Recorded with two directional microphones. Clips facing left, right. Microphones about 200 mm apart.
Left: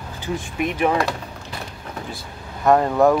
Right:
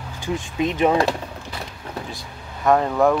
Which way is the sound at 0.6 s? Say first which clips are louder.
Right 2 dB; 25° right (ahead or behind).